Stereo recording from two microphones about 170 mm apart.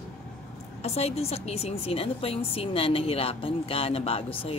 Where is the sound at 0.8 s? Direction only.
35° left (ahead or behind).